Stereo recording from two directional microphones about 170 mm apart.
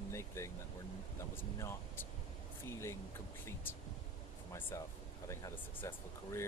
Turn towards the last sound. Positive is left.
turn(degrees=15)  # may be behind; listen again after turning